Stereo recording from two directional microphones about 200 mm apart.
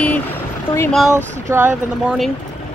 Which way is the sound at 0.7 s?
25° left (ahead or behind).